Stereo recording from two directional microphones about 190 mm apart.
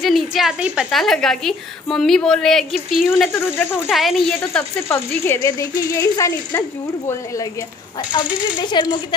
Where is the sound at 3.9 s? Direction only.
Centre (ahead or behind).